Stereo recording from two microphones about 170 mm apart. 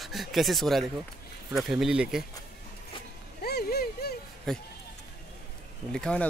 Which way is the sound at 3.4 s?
70° left (ahead or behind).